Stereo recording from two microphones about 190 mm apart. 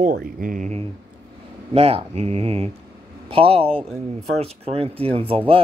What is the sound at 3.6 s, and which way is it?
Speech, 5° left (ahead or behind).